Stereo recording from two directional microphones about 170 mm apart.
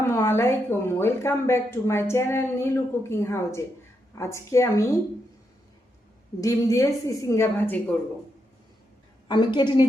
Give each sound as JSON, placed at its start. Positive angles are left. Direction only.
{"t": 0.0, "sound": "speech", "side_deg": 15}
{"t": 6.4, "sound": "speech", "side_deg": 20}
{"t": 9.2, "sound": "a woman's voice", "side_deg": 25}